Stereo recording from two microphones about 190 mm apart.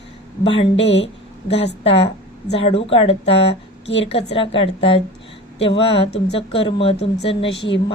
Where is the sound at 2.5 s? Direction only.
30° left (ahead or behind).